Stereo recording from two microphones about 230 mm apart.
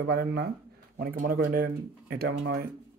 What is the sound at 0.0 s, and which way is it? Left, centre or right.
Speech, right.